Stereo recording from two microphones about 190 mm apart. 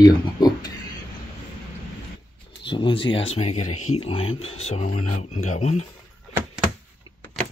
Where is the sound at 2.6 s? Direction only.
25° left (ahead or behind).